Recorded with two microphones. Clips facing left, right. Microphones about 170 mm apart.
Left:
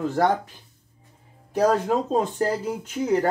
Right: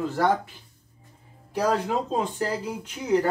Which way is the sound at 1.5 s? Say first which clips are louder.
Left 4 dB; 45° left (ahead or behind).